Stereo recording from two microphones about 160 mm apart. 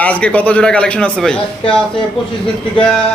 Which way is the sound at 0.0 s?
10° left (ahead or behind).